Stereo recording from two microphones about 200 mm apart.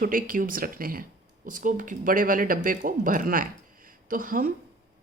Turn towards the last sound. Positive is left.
turn(degrees=-45)  # may be behind; listen again after turning